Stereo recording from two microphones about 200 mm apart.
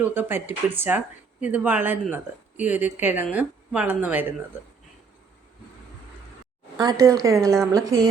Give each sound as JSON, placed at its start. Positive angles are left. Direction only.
{"t": 0.0, "sound": "speech", "side_deg": -10}
{"t": 6.7, "sound": "speech", "side_deg": -15}